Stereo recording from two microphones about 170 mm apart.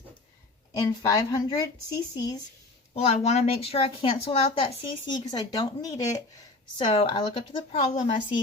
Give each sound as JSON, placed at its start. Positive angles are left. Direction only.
{"t": 0.8, "sound": "speech", "side_deg": 20}
{"t": 2.9, "sound": "speech", "side_deg": 35}
{"t": 6.8, "sound": "speech", "side_deg": 35}